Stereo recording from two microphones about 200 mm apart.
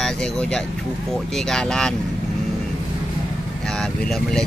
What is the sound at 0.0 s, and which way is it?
Speech, 5° left (ahead or behind).